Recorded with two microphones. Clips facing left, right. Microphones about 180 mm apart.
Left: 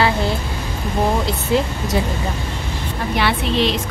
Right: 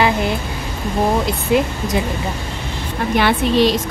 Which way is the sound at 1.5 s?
20° right (ahead or behind).